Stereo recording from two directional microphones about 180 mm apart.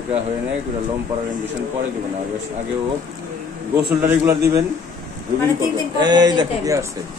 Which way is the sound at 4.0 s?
10° right (ahead or behind).